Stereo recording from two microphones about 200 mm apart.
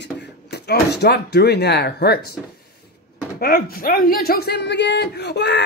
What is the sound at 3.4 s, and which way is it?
Speech, 45° left (ahead or behind).